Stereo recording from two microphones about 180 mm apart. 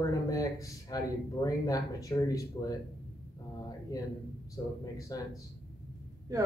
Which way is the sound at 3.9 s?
20° left (ahead or behind).